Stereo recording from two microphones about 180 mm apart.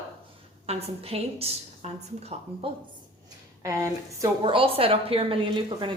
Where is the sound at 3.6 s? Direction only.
15° right (ahead or behind).